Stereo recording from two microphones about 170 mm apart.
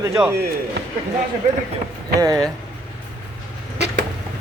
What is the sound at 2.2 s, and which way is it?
Speech, 20° right (ahead or behind).